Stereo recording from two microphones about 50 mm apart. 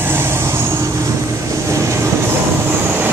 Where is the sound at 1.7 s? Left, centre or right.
Right.